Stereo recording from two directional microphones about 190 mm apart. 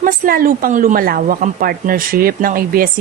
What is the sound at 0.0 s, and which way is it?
A woman's voice, 50° right (ahead or behind).